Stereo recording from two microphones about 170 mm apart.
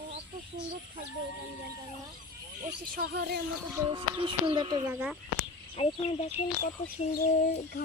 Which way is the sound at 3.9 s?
30° right (ahead or behind).